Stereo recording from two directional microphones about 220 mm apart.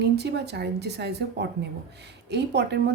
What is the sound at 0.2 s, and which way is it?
A woman's voice, 50° right (ahead or behind).